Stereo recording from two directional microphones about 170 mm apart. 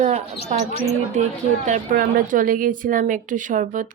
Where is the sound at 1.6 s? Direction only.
50° right (ahead or behind).